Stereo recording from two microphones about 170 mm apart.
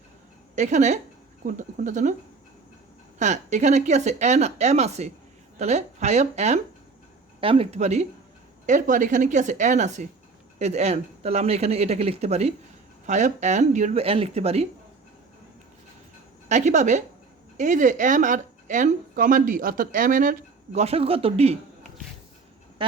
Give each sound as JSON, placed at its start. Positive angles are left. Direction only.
{"t": 0.5, "sound": "a woman's voice", "side_deg": -45}
{"t": 3.2, "sound": "a woman's voice", "side_deg": -45}
{"t": 16.5, "sound": "a woman's voice", "side_deg": -45}
{"t": 20.8, "sound": "speech", "side_deg": -35}
{"t": 22.8, "sound": "speech", "side_deg": -30}